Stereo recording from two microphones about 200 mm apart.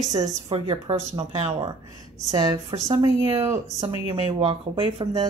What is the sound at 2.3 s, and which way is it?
A woman's voice, 20° right (ahead or behind).